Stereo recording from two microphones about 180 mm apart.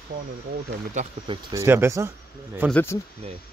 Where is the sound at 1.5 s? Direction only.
15° right (ahead or behind).